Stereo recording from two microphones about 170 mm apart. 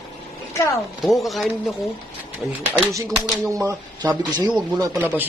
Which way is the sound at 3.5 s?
20° right (ahead or behind).